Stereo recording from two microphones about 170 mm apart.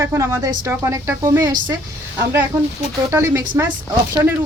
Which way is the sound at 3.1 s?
15° right (ahead or behind).